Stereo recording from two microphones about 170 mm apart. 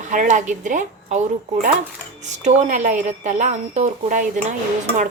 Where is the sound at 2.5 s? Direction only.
45° right (ahead or behind).